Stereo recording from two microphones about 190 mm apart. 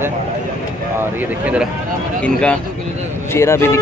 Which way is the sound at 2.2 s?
5° left (ahead or behind).